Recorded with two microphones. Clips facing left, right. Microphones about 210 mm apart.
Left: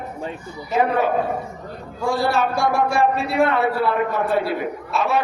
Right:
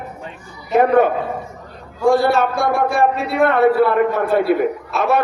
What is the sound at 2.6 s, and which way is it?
A man's voice, 55° right (ahead or behind).